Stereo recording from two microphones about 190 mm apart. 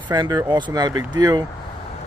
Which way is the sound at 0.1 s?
20° right (ahead or behind).